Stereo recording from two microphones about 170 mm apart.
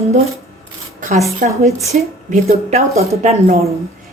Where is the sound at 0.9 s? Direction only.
50° right (ahead or behind).